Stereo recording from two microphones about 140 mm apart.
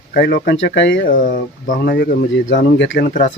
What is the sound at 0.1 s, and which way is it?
Speech, 90° left.